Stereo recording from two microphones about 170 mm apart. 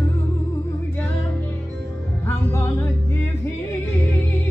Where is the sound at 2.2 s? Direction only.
15° left (ahead or behind).